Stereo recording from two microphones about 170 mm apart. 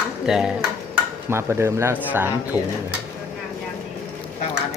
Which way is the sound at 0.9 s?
15° right (ahead or behind).